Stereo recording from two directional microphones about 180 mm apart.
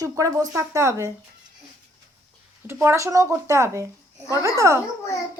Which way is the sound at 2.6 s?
15° right (ahead or behind).